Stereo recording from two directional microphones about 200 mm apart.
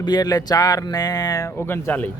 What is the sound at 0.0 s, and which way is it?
Speech, 20° left (ahead or behind).